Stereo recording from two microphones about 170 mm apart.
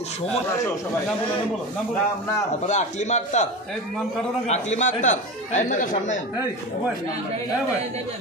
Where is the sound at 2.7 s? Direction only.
45° left (ahead or behind).